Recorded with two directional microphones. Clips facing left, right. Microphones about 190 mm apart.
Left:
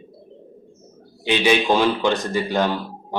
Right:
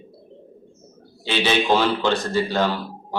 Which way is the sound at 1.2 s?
15° left (ahead or behind).